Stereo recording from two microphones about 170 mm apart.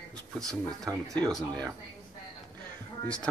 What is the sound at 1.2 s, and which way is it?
Speech, 5° left (ahead or behind).